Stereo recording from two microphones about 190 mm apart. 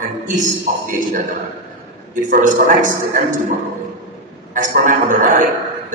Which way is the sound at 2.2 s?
45° right (ahead or behind).